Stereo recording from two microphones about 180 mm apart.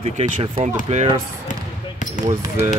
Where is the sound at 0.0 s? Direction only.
40° right (ahead or behind).